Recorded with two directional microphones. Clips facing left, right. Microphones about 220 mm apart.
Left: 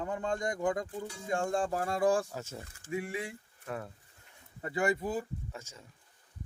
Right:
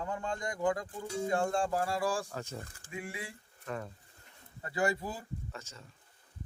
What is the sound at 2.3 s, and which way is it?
Speech, 5° left (ahead or behind).